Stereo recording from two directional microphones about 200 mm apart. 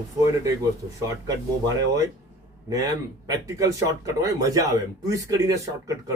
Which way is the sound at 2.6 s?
15° right (ahead or behind).